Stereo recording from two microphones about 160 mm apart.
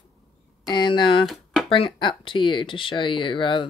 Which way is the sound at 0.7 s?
30° left (ahead or behind).